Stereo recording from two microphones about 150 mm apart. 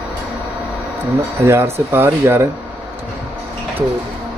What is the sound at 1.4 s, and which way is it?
Speech, 15° right (ahead or behind).